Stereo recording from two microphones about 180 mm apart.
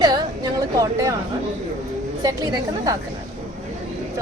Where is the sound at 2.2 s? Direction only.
20° right (ahead or behind).